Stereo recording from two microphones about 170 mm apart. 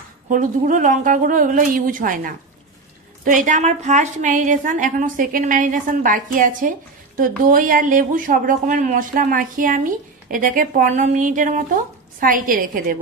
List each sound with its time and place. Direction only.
0.3 s a woman's voice: 50° right (ahead or behind)